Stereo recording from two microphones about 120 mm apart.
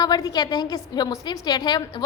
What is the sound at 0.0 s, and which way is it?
A woman's voice, 30° left (ahead or behind).